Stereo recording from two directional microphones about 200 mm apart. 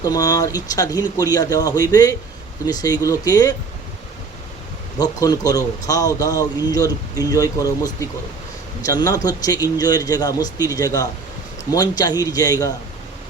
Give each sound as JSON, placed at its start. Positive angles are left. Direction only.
{"t": 0.0, "sound": "a man's voice", "side_deg": 20}
{"t": 4.9, "sound": "a man's voice", "side_deg": 20}